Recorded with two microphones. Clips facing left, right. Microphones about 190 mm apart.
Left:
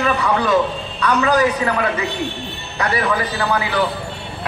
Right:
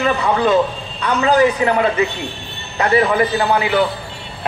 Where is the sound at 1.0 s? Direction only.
25° right (ahead or behind).